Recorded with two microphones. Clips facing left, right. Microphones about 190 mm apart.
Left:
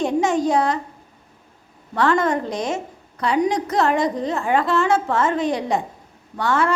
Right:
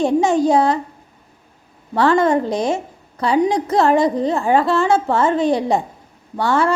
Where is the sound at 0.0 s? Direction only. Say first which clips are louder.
Right 4 dB; 30° right (ahead or behind).